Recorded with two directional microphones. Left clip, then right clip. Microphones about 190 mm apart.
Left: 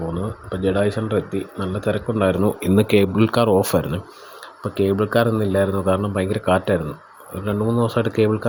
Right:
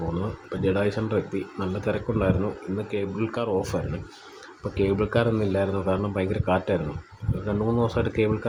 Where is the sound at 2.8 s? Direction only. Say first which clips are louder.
Left 13 dB; 45° left (ahead or behind).